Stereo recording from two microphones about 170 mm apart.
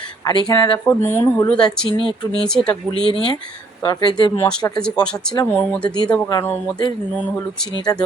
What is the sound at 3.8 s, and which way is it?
Speech, 25° left (ahead or behind).